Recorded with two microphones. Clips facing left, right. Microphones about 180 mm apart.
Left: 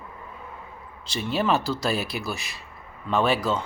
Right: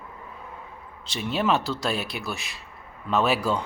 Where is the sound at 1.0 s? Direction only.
Centre (ahead or behind).